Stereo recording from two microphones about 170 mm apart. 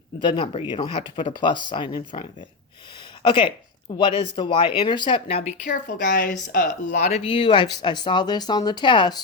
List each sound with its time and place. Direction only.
0.2 s speech: 30° left (ahead or behind)
3.2 s speech: 30° left (ahead or behind)
5.6 s speech: 75° left (ahead or behind); by 7.1 s 60° left (ahead or behind)
7.1 s speech: 30° left (ahead or behind)